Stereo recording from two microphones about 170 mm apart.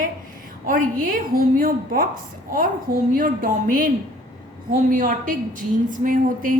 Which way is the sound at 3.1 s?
55° right (ahead or behind).